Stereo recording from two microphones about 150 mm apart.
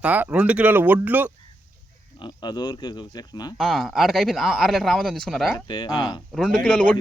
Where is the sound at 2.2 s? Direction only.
30° left (ahead or behind).